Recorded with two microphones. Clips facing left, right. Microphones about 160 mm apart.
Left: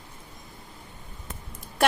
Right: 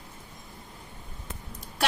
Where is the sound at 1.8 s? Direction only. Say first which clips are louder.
Left 5 dB; 50° left (ahead or behind).